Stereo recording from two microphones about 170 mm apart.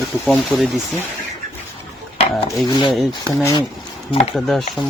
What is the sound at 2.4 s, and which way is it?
Dishes, 20° left (ahead or behind).